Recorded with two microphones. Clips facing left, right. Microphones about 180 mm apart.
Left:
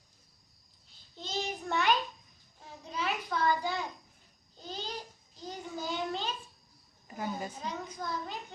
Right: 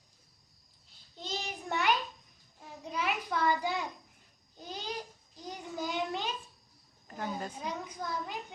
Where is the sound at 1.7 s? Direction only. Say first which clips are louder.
Left 1 dB; 15° right (ahead or behind).